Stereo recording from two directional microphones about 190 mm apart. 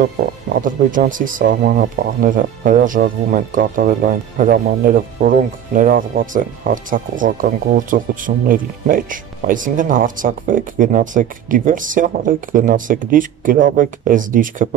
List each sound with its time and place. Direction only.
0.6 s speech: 45° right (ahead or behind)